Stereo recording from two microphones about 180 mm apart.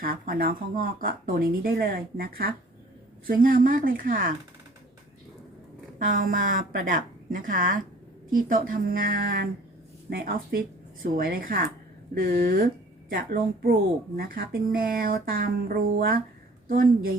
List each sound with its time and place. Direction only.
0.0 s speech: 55° right (ahead or behind)
6.0 s speech: 50° right (ahead or behind)